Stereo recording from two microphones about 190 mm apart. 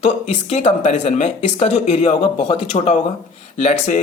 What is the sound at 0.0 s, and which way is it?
A man's voice, 35° left (ahead or behind).